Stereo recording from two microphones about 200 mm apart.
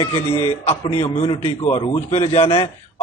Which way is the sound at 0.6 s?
30° left (ahead or behind).